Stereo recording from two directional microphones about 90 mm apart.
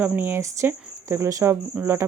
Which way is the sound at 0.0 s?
25° right (ahead or behind).